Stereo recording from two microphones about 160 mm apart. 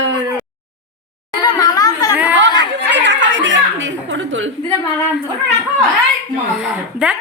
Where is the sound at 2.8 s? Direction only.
90° right.